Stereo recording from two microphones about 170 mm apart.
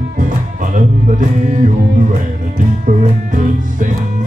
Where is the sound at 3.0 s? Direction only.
50° right (ahead or behind).